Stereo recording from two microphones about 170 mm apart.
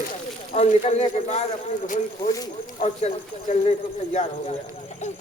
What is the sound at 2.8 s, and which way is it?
Speech, 40° left (ahead or behind).